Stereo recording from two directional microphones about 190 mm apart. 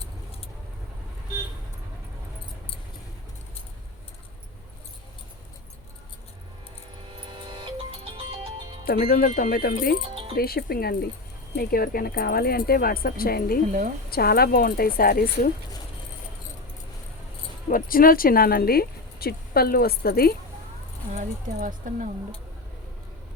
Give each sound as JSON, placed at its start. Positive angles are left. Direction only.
{"t": 7.2, "sound": "music", "side_deg": -25}
{"t": 8.8, "sound": "speech", "side_deg": 50}
{"t": 17.7, "sound": "speech", "side_deg": 50}
{"t": 21.1, "sound": "speech", "side_deg": -40}